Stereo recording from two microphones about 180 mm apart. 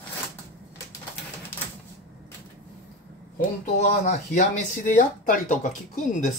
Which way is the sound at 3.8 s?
40° left (ahead or behind).